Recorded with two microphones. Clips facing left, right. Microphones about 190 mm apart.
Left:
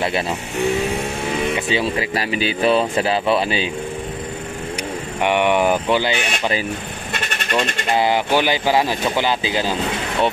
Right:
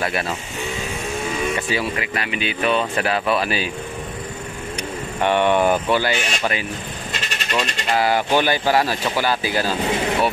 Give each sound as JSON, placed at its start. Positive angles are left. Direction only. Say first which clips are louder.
{"t": 1.5, "sound": "speech", "louder": "left 3 dB", "side_deg": 25}
{"t": 5.2, "sound": "speech", "louder": "even", "side_deg": 15}
{"t": 6.1, "sound": "speech", "louder": "left 1 dB", "side_deg": 60}
{"t": 7.1, "sound": "vehicle", "louder": "left 3 dB", "side_deg": 55}
{"t": 7.9, "sound": "speech", "louder": "left 1 dB", "side_deg": 20}